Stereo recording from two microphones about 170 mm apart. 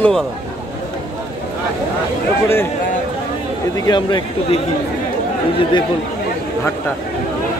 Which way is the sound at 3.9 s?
25° left (ahead or behind).